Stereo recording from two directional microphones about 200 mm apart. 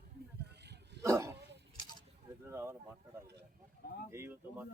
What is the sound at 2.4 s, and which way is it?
Speech, 15° right (ahead or behind).